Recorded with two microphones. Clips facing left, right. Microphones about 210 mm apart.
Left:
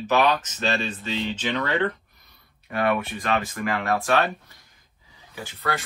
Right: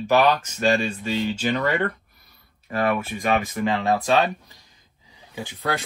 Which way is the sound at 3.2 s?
15° right (ahead or behind).